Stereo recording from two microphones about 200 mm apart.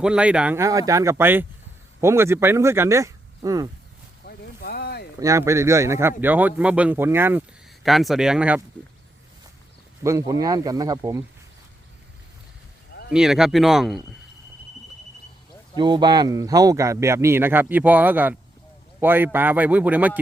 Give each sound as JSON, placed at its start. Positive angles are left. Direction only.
{"t": 0.0, "sound": "speech", "side_deg": -5}
{"t": 4.3, "sound": "a sound", "side_deg": 50}
{"t": 5.2, "sound": "speech", "side_deg": -15}
{"t": 7.9, "sound": "speech", "side_deg": 0}
{"t": 10.0, "sound": "speech", "side_deg": -15}
{"t": 13.1, "sound": "speech", "side_deg": 0}
{"t": 15.8, "sound": "speech", "side_deg": -20}